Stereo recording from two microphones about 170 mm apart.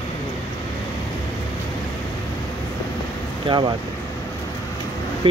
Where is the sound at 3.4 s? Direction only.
30° right (ahead or behind).